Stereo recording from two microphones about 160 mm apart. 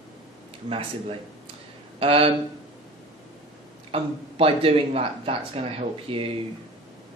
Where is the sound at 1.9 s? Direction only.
35° right (ahead or behind).